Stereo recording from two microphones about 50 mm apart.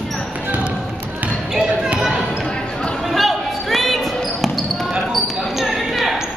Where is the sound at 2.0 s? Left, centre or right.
Centre.